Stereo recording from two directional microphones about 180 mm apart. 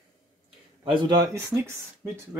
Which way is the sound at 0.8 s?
25° right (ahead or behind).